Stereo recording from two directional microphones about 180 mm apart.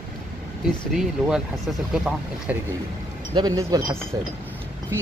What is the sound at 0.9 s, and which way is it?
Speech, 5° right (ahead or behind).